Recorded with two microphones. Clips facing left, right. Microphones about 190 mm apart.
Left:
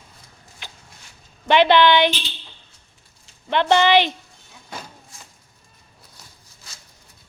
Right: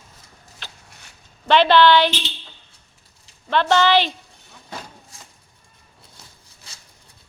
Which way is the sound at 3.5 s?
15° left (ahead or behind).